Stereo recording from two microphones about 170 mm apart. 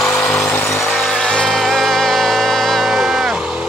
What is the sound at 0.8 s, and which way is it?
Music, 5° left (ahead or behind).